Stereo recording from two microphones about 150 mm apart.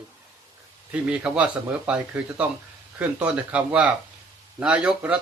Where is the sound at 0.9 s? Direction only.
5° right (ahead or behind).